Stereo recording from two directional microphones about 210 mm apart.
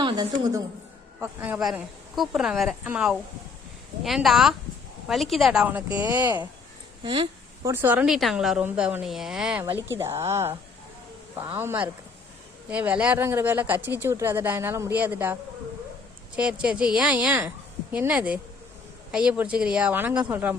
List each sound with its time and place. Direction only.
0.0 s a woman's voice: 20° right (ahead or behind)
1.2 s a woman's voice: 10° right (ahead or behind)
7.0 s a sound: 25° right (ahead or behind)
7.7 s a woman's voice: 10° right (ahead or behind)